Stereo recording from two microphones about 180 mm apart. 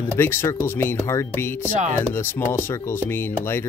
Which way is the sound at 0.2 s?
15° left (ahead or behind).